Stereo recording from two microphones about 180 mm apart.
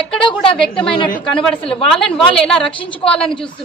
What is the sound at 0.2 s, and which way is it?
Speech, 30° left (ahead or behind).